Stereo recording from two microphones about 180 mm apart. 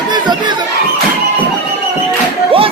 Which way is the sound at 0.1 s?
25° right (ahead or behind).